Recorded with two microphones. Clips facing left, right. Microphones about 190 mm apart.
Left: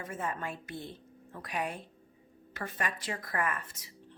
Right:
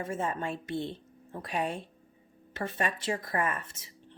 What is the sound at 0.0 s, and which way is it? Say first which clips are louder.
A woman's voice: right 4 dB; 25° right (ahead or behind).